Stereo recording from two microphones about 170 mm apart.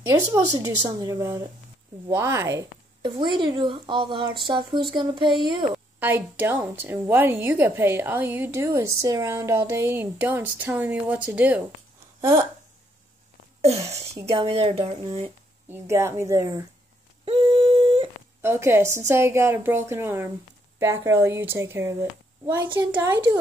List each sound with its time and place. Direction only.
0.0 s a woman's voice: 25° right (ahead or behind)
3.0 s speech: 30° right (ahead or behind)
5.9 s a woman's voice: 10° right (ahead or behind)
14.2 s speech: 35° right (ahead or behind)
15.7 s a woman's voice: 15° right (ahead or behind)
17.2 s a sound: 35° right (ahead or behind)
18.4 s a woman's voice: 15° right (ahead or behind)